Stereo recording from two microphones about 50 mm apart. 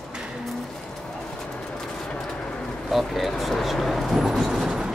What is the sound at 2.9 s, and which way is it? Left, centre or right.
Vehicle, centre.